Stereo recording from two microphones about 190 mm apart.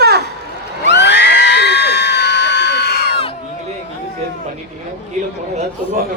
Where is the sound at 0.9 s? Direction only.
65° left (ahead or behind).